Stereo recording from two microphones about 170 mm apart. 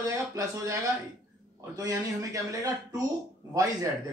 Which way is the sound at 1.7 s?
20° right (ahead or behind).